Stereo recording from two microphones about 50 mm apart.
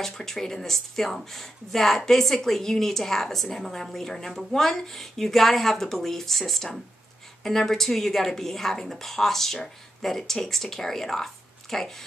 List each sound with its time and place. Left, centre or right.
0.0 s speech: centre